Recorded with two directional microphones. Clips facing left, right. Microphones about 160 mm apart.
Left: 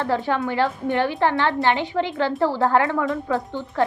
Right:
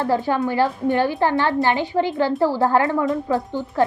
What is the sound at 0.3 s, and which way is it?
Speech, 40° right (ahead or behind).